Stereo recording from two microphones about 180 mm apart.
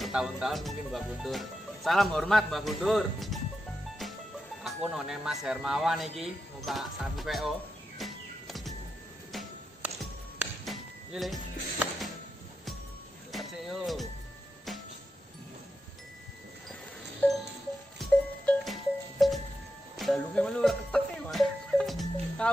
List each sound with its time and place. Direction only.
0.0 s speech: 5° right (ahead or behind)
4.0 s music: centre (ahead or behind)
4.6 s speech: centre (ahead or behind)
8.0 s music: centre (ahead or behind)
9.8 s music: 5° right (ahead or behind)
13.3 s speech: centre (ahead or behind)
17.2 s music: 5° left (ahead or behind)